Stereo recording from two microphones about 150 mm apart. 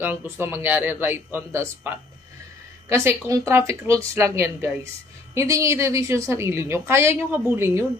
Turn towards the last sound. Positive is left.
turn(degrees=-15)  # may be behind; listen again after turning